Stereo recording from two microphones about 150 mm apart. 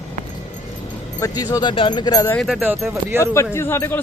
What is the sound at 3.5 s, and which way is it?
Speech, 15° left (ahead or behind).